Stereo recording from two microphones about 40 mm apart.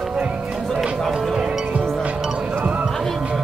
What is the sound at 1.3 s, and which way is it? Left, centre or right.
Music, right.